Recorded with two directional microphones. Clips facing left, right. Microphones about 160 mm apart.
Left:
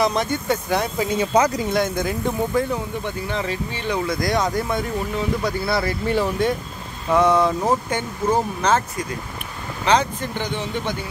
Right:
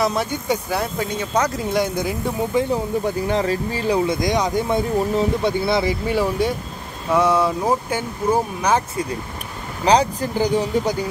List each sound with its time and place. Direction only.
0.0 s speech: 5° right (ahead or behind)
0.9 s speech: 5° left (ahead or behind)
1.7 s speech: 10° right (ahead or behind)
2.7 s speech: 35° right (ahead or behind); by 4.6 s 20° right (ahead or behind)
4.6 s speech: 30° right (ahead or behind); by 8.8 s 10° right (ahead or behind)
9.8 s speech: 35° right (ahead or behind)